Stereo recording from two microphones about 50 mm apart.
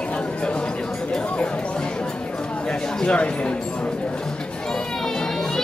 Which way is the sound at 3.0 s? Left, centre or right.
Left.